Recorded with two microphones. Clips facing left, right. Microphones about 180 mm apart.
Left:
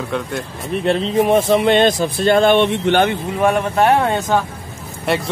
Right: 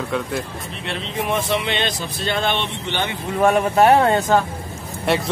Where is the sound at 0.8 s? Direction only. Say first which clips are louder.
Left 10 dB; 40° left (ahead or behind).